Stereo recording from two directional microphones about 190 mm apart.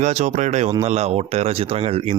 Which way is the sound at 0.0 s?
35° right (ahead or behind).